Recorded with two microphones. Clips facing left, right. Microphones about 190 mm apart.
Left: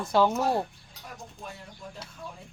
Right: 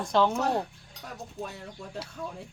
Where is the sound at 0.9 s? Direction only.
5° left (ahead or behind).